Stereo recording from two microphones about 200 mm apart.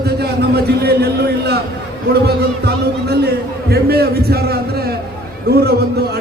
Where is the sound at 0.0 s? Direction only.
55° right (ahead or behind).